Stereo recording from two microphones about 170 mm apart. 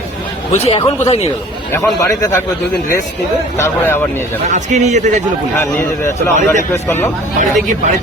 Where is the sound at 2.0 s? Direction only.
20° left (ahead or behind).